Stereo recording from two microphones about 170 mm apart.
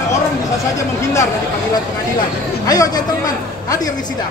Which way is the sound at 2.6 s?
20° left (ahead or behind).